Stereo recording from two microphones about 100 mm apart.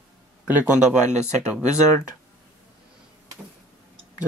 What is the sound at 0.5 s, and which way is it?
Speech, 15° right (ahead or behind).